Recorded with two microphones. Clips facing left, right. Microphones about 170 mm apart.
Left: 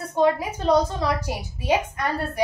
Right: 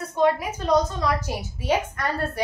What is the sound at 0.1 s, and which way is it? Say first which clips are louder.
A woman's voice: left 1 dB; 30° left (ahead or behind).